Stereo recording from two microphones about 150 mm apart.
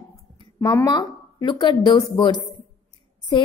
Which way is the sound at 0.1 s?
25° left (ahead or behind).